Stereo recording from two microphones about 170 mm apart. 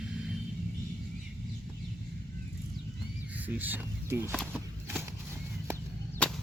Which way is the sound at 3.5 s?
10° right (ahead or behind).